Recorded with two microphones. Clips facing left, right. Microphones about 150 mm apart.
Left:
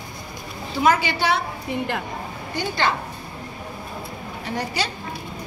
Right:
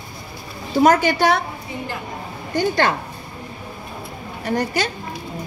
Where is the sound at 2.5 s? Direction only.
45° right (ahead or behind).